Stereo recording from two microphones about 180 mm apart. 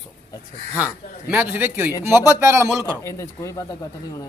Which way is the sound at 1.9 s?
20° left (ahead or behind).